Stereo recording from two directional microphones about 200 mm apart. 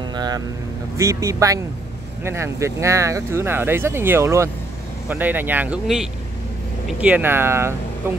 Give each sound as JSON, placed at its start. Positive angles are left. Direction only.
{"t": 0.1, "sound": "speech", "side_deg": -20}